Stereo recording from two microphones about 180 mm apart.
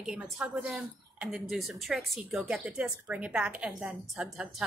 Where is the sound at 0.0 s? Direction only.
5° right (ahead or behind).